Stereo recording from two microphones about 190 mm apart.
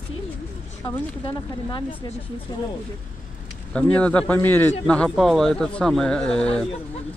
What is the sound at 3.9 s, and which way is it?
Speech, 5° left (ahead or behind).